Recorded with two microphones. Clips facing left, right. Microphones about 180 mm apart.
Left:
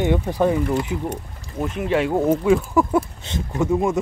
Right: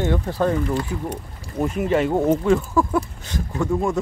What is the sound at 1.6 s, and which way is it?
Speech, centre (ahead or behind).